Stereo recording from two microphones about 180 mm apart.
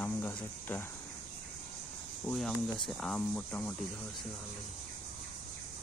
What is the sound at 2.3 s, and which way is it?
Speech, 5° left (ahead or behind).